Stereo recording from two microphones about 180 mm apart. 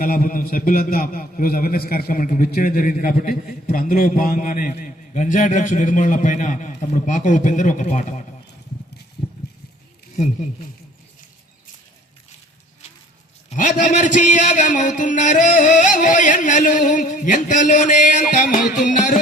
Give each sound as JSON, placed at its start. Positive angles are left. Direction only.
{"t": 0.0, "sound": "a man's voice", "side_deg": 50}
{"t": 13.5, "sound": "a man's voice", "side_deg": 45}